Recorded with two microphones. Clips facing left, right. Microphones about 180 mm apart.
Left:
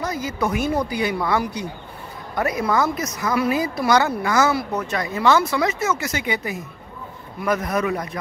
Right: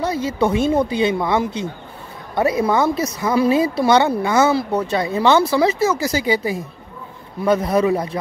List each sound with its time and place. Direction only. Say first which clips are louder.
0.0 s a woman's voice: right 5 dB; 30° right (ahead or behind)